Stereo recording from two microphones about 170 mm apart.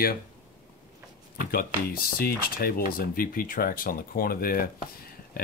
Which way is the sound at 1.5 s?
60° left (ahead or behind).